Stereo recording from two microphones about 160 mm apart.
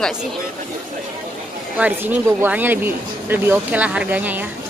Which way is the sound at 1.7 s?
10° right (ahead or behind).